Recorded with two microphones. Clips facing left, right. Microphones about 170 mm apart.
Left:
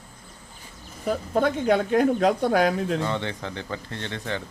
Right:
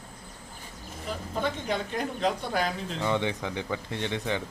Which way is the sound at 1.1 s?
60° left (ahead or behind).